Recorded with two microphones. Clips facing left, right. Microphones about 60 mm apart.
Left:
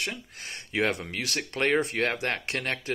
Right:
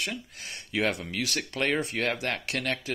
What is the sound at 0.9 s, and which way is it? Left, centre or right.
Speech, left.